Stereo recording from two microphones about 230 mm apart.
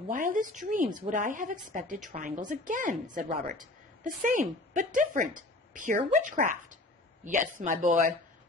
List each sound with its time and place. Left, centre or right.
0.1 s a woman's voice: right